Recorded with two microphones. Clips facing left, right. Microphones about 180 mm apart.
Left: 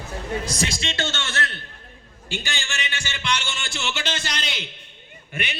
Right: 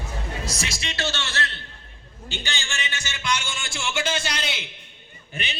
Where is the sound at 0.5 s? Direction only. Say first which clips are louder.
Left 5 dB; 30° left (ahead or behind).